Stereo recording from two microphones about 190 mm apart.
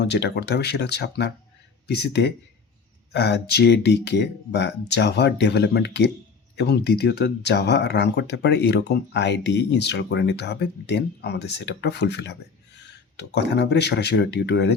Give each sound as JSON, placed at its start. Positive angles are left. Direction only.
{"t": 0.0, "sound": "speech", "side_deg": 65}